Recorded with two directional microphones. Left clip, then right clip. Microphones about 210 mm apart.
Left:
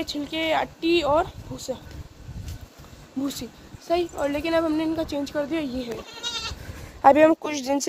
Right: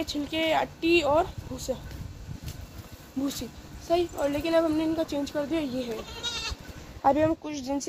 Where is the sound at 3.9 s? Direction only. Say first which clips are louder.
Left 2 dB; 15° left (ahead or behind).